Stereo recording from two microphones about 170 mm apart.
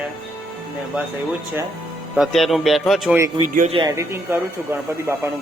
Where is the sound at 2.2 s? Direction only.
Centre (ahead or behind).